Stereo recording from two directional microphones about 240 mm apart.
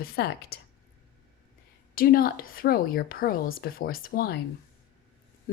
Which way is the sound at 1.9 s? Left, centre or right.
Left.